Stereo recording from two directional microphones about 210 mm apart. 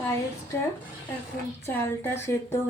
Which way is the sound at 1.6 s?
10° left (ahead or behind).